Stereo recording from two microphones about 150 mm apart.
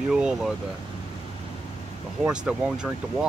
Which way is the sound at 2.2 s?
5° right (ahead or behind).